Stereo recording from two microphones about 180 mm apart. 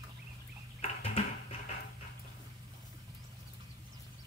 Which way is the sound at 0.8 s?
35° left (ahead or behind).